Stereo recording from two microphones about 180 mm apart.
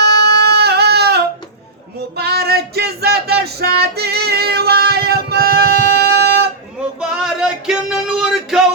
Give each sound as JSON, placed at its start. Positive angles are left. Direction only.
{"t": 0.0, "sound": "a sound", "side_deg": -65}
{"t": 2.1, "sound": "music", "side_deg": -60}
{"t": 7.0, "sound": "music", "side_deg": -5}